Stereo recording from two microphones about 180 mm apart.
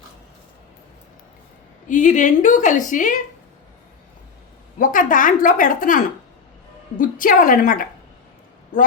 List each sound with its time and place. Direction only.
1.9 s a woman's voice: 45° left (ahead or behind)
4.8 s a woman's voice: 45° left (ahead or behind)